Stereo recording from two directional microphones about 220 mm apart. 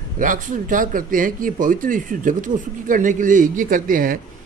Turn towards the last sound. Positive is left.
turn(degrees=-40)  # may be behind; listen again after turning